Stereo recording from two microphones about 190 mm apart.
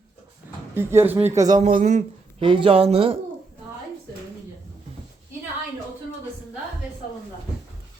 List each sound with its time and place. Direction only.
0.7 s speech: 10° right (ahead or behind)
1.7 s speech: 40° right (ahead or behind)
2.4 s speech: 25° right (ahead or behind)